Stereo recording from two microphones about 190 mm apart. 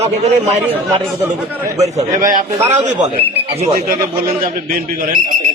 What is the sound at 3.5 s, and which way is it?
Speech, 35° right (ahead or behind).